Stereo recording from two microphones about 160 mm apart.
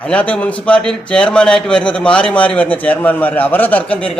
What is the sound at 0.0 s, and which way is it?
A man's voice, 10° left (ahead or behind).